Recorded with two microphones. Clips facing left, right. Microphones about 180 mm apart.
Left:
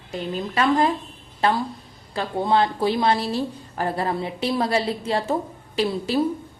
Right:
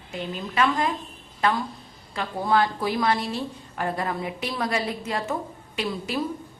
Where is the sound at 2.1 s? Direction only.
25° left (ahead or behind).